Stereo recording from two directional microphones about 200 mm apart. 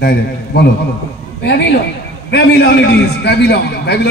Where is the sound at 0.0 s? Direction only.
55° left (ahead or behind).